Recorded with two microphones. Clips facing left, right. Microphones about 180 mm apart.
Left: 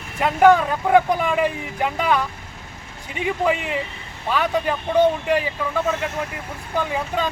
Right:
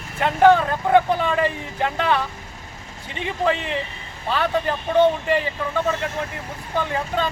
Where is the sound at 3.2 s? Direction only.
10° left (ahead or behind).